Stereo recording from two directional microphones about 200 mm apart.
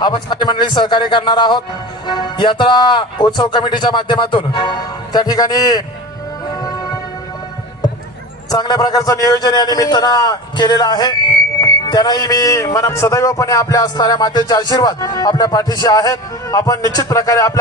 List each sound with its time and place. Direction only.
0.0 s speech: 20° left (ahead or behind)
6.5 s music: 20° left (ahead or behind)
8.5 s speech: 20° left (ahead or behind)